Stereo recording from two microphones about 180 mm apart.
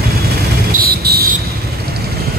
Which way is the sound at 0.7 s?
60° right (ahead or behind).